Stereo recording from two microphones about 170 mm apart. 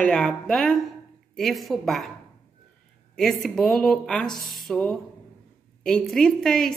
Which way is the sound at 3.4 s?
5° left (ahead or behind).